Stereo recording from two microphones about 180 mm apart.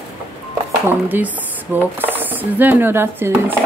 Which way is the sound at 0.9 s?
10° right (ahead or behind).